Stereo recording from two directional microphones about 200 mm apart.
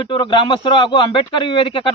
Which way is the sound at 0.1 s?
25° left (ahead or behind).